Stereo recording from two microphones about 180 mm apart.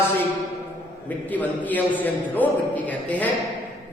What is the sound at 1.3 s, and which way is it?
Speech, 10° left (ahead or behind).